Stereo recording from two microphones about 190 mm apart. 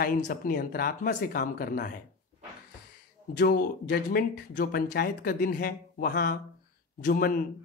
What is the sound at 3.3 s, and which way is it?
Speech, 55° left (ahead or behind).